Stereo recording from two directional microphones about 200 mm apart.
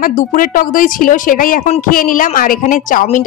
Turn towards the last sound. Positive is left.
turn(degrees=40)  # may be behind; listen again after turning